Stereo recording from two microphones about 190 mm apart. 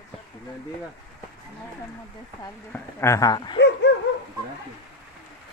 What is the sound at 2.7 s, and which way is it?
Speech, 15° left (ahead or behind).